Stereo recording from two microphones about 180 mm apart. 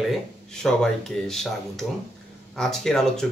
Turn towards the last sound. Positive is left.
turn(degrees=5)  # may be behind; listen again after turning